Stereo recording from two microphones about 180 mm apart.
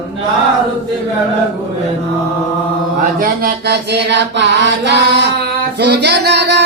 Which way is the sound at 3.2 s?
60° right (ahead or behind).